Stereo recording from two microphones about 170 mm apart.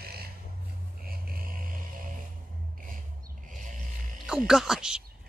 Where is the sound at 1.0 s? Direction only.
60° right (ahead or behind).